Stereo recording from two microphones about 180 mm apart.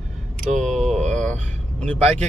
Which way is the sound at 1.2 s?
5° left (ahead or behind).